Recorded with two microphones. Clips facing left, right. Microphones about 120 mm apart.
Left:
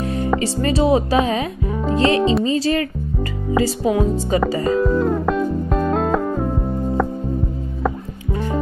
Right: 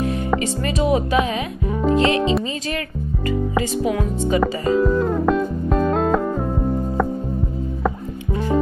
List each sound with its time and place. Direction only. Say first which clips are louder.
0.0 s music: even; 35° left (ahead or behind)
0.4 s speech: left 3 dB; 35° left (ahead or behind)
1.7 s music: right 5 dB; 5° right (ahead or behind)
2.0 s speech: left 4 dB; 35° left (ahead or behind)
3.9 s speech: left 2 dB; 30° left (ahead or behind)
4.4 s music: right 1 dB; centre (ahead or behind)